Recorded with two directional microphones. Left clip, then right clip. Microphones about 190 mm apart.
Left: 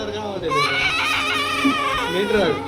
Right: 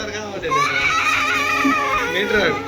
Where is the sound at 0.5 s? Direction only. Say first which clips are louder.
Right 2 dB; 25° left (ahead or behind).